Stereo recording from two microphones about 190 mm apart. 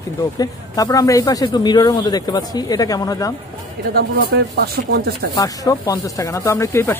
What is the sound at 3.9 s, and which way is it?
Speech, 55° right (ahead or behind).